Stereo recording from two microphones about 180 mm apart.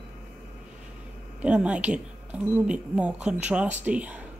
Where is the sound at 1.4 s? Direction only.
5° right (ahead or behind).